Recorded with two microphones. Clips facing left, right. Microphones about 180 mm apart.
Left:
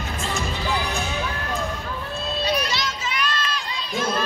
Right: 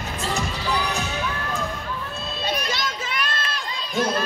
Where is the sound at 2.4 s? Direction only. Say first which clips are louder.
Left 1 dB; 50° right (ahead or behind).